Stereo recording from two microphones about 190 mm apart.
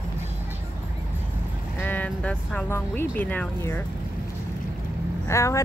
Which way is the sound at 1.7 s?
10° left (ahead or behind).